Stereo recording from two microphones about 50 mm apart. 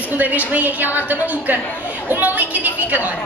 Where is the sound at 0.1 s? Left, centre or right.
Right.